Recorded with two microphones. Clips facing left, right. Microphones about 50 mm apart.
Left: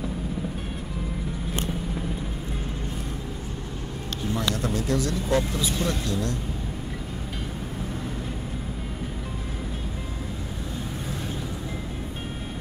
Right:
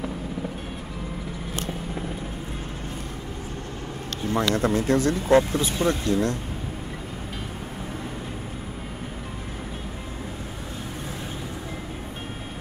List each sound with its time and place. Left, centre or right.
4.3 s speech: right